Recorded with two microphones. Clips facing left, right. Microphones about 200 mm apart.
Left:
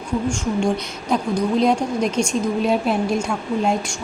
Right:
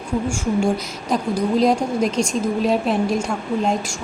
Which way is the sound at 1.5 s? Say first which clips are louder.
Right 2 dB; centre (ahead or behind).